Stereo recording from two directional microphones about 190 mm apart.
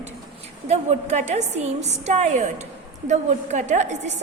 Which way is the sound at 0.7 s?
35° right (ahead or behind).